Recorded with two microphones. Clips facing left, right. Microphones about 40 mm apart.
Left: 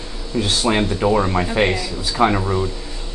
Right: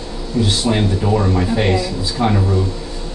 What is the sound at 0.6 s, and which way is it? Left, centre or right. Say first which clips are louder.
Speech: even; left.